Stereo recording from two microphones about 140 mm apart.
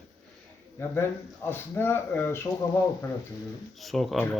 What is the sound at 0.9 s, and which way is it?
Speech, 15° left (ahead or behind).